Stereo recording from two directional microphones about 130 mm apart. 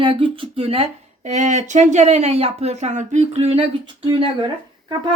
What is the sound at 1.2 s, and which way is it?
Speech, 65° right (ahead or behind).